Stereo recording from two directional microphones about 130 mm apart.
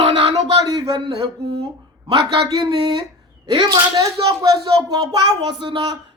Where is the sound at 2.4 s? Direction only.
35° right (ahead or behind).